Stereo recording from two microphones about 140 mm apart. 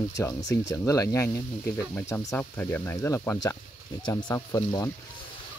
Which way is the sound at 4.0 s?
30° left (ahead or behind).